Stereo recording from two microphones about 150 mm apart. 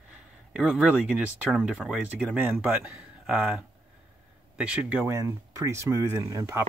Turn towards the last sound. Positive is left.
turn(degrees=-20)  # may be behind; listen again after turning